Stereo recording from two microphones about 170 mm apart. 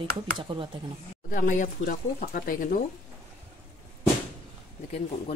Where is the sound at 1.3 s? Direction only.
50° left (ahead or behind).